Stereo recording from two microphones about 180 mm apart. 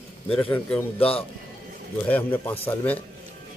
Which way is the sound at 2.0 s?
10° left (ahead or behind).